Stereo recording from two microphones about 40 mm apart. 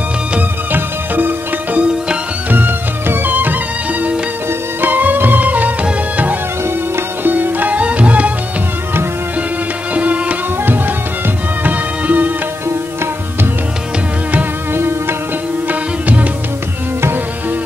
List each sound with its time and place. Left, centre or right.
0.7 s music: right
4.8 s music: right
7.2 s music: right
7.8 s music: right
9.9 s music: right
11.6 s music: right
12.6 s tabla: right
14.7 s music: right
15.7 s music: right